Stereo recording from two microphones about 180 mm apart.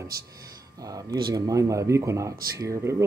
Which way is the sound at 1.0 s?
20° right (ahead or behind).